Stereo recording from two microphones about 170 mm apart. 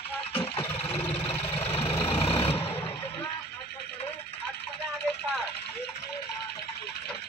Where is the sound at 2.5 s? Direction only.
10° left (ahead or behind).